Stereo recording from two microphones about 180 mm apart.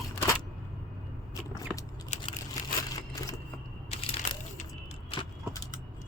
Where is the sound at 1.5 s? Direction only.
20° left (ahead or behind).